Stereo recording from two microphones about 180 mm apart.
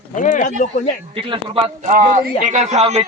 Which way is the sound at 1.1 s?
30° right (ahead or behind).